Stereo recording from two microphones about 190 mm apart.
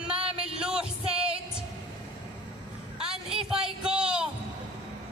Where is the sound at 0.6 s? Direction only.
5° right (ahead or behind).